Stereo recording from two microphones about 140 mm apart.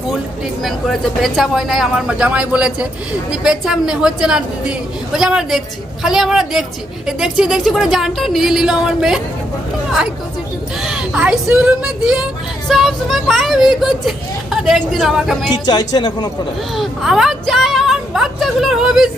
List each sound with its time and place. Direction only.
0.6 s a woman's voice: centre (ahead or behind)
10.8 s a woman's voice: 5° right (ahead or behind)
15.4 s speech: 30° left (ahead or behind)
16.7 s a woman's voice: centre (ahead or behind)